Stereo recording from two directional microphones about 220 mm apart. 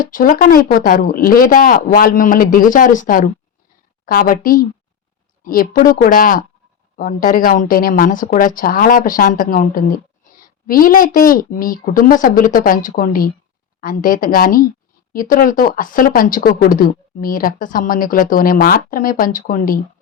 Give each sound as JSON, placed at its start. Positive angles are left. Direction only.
{"t": 0.0, "sound": "speech", "side_deg": 40}